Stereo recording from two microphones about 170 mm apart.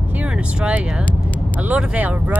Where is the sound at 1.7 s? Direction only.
10° right (ahead or behind).